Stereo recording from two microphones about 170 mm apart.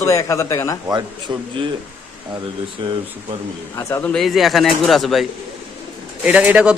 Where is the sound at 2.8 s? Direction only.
30° right (ahead or behind).